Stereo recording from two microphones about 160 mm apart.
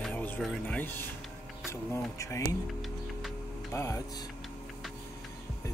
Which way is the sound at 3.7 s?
15° left (ahead or behind).